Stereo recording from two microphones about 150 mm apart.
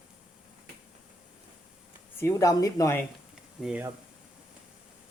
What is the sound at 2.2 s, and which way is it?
Dishes, 20° left (ahead or behind).